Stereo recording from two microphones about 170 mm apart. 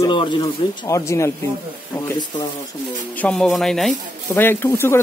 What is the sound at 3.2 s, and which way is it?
Speech, 5° left (ahead or behind).